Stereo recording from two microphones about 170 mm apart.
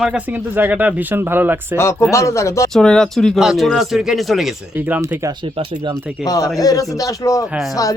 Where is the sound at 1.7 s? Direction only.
15° left (ahead or behind).